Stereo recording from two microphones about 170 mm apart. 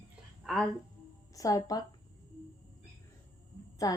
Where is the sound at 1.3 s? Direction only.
20° left (ahead or behind).